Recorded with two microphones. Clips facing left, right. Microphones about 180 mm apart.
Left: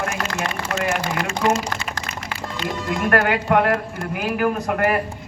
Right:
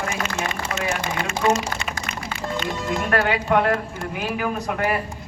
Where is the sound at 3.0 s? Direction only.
55° left (ahead or behind).